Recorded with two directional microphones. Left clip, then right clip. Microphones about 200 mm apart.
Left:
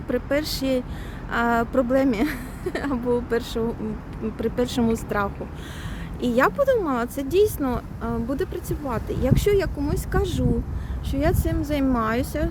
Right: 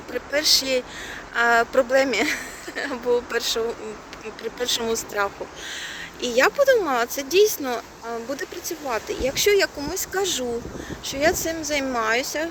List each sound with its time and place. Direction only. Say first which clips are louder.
0.3 s speech: right 8 dB; 10° left (ahead or behind)
4.6 s speech: right 3 dB; 10° left (ahead or behind)